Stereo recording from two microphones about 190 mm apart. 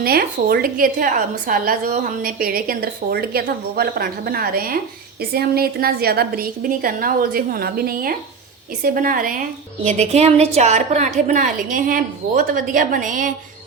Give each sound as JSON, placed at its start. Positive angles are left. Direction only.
{"t": 0.0, "sound": "a woman's voice", "side_deg": -55}
{"t": 9.8, "sound": "a woman's voice", "side_deg": -35}